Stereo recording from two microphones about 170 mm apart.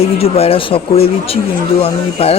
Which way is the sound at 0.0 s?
35° left (ahead or behind).